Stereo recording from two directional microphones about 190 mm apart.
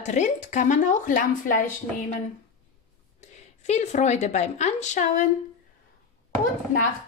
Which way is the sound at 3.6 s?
35° left (ahead or behind).